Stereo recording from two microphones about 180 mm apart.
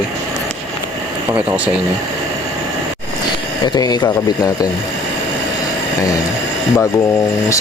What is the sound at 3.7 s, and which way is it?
Speech, 25° left (ahead or behind).